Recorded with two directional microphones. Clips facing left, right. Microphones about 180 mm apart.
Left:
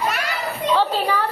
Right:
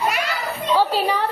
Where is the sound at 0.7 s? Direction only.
15° right (ahead or behind).